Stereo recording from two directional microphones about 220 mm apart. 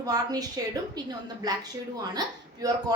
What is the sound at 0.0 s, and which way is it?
Speech, 15° right (ahead or behind).